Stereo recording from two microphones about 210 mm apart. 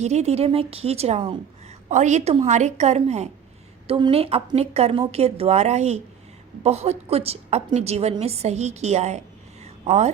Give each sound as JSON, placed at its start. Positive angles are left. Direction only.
{"t": 0.0, "sound": "a woman's voice", "side_deg": -30}